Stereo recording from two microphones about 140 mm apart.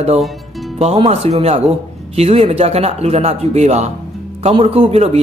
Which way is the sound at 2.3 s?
55° right (ahead or behind).